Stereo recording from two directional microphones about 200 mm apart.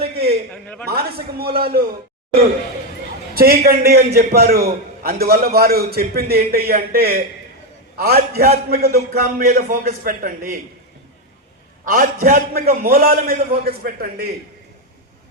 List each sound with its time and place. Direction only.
0.5 s a man's voice: 5° left (ahead or behind)
0.9 s a man's voice: 50° right (ahead or behind)
3.3 s a man's voice: 50° right (ahead or behind)
11.9 s a man's voice: 45° right (ahead or behind)